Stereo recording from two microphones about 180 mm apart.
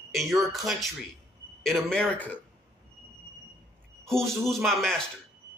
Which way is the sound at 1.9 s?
5° left (ahead or behind).